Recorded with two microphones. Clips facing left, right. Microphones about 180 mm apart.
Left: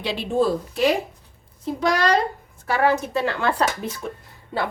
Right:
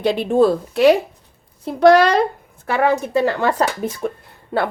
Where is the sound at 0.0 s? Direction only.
50° right (ahead or behind).